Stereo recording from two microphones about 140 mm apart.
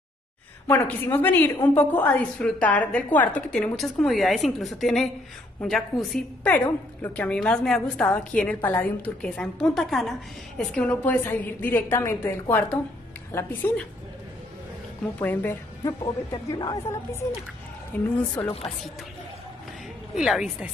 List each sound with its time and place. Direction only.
0.7 s a woman's voice: 15° left (ahead or behind)
15.1 s speech: 15° left (ahead or behind)
16.0 s a woman's voice: 30° left (ahead or behind); by 18.5 s 10° left (ahead or behind)
20.2 s a woman's voice: 5° right (ahead or behind)